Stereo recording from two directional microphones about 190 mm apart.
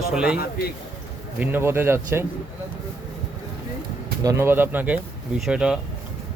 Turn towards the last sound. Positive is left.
turn(degrees=-5)  # may be behind; listen again after turning